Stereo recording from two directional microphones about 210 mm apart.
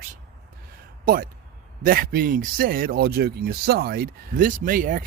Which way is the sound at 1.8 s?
45° right (ahead or behind).